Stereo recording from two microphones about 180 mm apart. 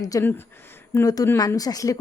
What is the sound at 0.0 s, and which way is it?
Speech, 15° left (ahead or behind).